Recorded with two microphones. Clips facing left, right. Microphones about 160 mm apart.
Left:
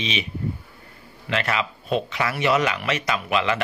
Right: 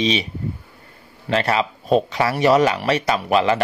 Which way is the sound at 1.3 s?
35° right (ahead or behind).